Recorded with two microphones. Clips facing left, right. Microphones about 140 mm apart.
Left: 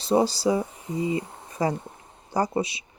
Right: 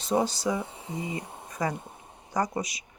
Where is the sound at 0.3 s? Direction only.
35° left (ahead or behind).